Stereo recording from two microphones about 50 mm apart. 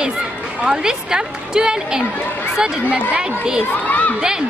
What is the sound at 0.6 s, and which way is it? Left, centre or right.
Speech, centre.